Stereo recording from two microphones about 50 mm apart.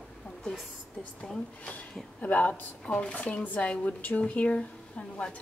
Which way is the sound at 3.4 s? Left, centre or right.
Left.